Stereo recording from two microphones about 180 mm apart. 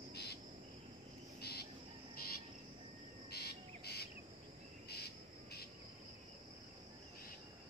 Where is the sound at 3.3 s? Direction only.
65° left (ahead or behind).